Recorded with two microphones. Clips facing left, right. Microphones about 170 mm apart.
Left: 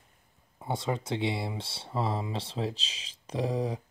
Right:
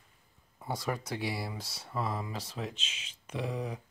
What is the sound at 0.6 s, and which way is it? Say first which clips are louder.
Speech: left 3 dB; 25° left (ahead or behind).